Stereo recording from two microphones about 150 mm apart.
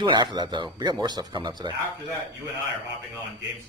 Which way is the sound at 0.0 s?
30° right (ahead or behind).